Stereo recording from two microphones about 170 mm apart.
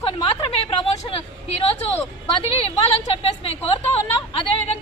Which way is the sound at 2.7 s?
35° left (ahead or behind).